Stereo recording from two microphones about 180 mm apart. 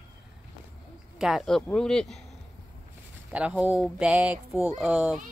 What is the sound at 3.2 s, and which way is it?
Speech, 5° right (ahead or behind).